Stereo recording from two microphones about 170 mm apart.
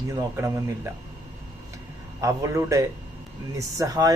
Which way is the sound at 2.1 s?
20° right (ahead or behind).